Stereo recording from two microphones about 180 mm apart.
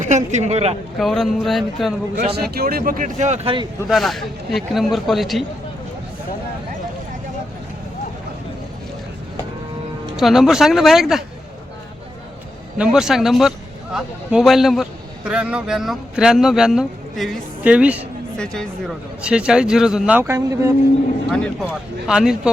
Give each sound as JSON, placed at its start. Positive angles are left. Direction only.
{"t": 0.0, "sound": "a man's voice", "side_deg": -40}
{"t": 0.9, "sound": "a man's voice", "side_deg": 0}
{"t": 2.3, "sound": "speech", "side_deg": -60}
{"t": 3.8, "sound": "a man's voice", "side_deg": 0}
{"t": 10.2, "sound": "a man's voice", "side_deg": 0}
{"t": 12.8, "sound": "a man's voice", "side_deg": -5}
{"t": 18.3, "sound": "a man's voice", "side_deg": 5}
{"t": 21.2, "sound": "a man's voice", "side_deg": 0}